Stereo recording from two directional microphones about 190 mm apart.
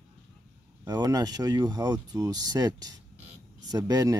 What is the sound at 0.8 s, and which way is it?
Speech, 20° right (ahead or behind).